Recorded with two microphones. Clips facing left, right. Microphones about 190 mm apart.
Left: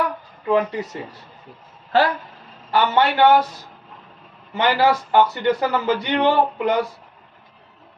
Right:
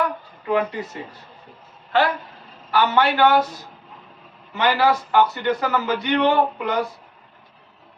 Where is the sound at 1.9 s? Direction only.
35° left (ahead or behind).